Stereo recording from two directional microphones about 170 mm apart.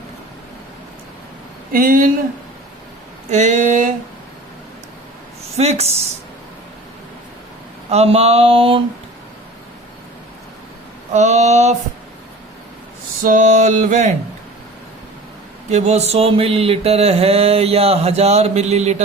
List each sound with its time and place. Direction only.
1.7 s speech: 55° right (ahead or behind)
3.2 s a sound: 45° right (ahead or behind)
5.5 s mantra: 40° right (ahead or behind)
7.9 s mantra: 35° right (ahead or behind)
11.1 s mantra: 45° right (ahead or behind)
13.2 s a sound: 50° right (ahead or behind)
15.7 s mantra: 40° right (ahead or behind)